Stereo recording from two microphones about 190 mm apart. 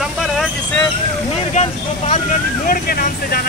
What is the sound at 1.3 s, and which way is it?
Speech, 35° left (ahead or behind).